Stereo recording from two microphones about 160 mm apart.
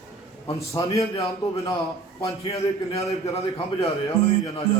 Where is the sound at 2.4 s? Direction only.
40° left (ahead or behind).